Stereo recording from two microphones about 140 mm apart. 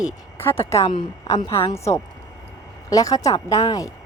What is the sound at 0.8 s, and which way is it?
Speech, 35° left (ahead or behind).